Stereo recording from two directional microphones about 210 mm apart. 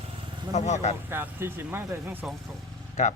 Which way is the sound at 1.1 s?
10° right (ahead or behind).